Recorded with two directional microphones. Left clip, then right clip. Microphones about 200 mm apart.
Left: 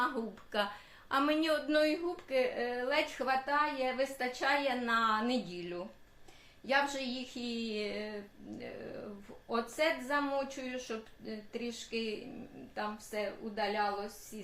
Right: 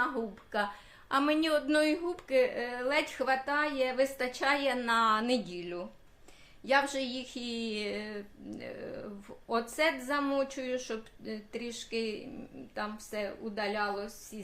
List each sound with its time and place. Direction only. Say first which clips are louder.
0.5 s speech: right 2 dB; 30° right (ahead or behind); by 14.5 s 55° right (ahead or behind)